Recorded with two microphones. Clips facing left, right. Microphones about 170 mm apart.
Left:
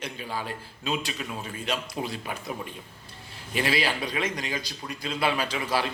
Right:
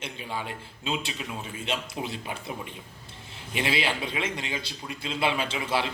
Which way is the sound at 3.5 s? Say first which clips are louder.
Left 1 dB; 20° right (ahead or behind).